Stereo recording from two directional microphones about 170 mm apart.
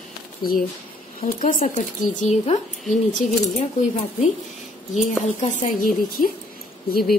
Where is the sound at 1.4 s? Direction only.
45° left (ahead or behind).